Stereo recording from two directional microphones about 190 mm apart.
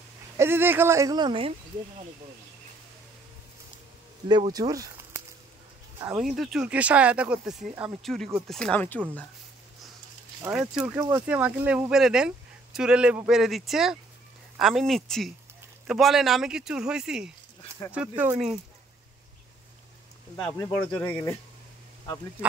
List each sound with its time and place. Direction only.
0.4 s speech: 10° right (ahead or behind)
4.3 s speech: 20° right (ahead or behind)
6.2 s speech: centre (ahead or behind)
8.0 s speech: centre (ahead or behind)
10.5 s speech: 5° right (ahead or behind)
20.4 s speech: 15° left (ahead or behind)